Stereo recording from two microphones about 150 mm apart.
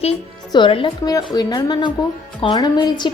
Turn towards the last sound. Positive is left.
turn(degrees=30)  # may be behind; listen again after turning